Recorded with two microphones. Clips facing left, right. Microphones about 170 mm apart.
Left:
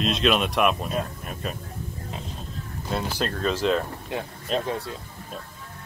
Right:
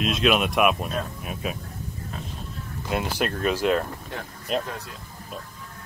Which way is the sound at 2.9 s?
15° right (ahead or behind).